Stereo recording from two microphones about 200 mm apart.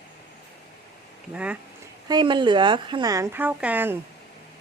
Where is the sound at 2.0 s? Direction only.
20° right (ahead or behind).